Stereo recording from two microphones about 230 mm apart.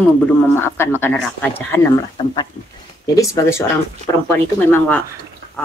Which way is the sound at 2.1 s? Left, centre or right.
Left.